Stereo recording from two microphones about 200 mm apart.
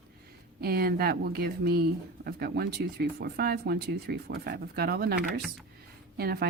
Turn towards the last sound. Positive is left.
turn(degrees=-50)  # may be behind; listen again after turning